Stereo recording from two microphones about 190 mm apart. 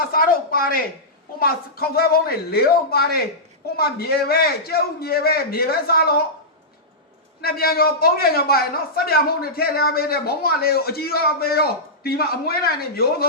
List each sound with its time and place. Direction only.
0.0 s a man's voice: 50° left (ahead or behind)
7.4 s a man's voice: 55° left (ahead or behind)